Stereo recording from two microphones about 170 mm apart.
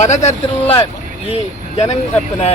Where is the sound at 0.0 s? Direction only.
45° left (ahead or behind).